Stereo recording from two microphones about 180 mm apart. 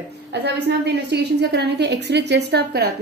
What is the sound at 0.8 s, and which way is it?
A woman's voice, 70° right (ahead or behind).